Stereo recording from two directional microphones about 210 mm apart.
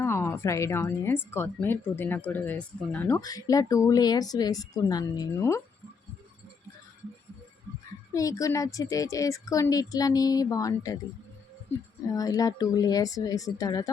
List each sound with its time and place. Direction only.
0.0 s a woman's voice: 10° left (ahead or behind)
8.1 s a woman's voice: 15° left (ahead or behind)